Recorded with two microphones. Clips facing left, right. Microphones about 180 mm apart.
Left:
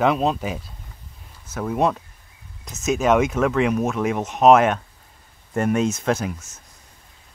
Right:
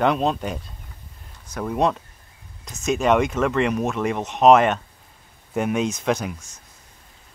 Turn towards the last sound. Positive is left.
turn(degrees=0)  # may be behind; listen again after turning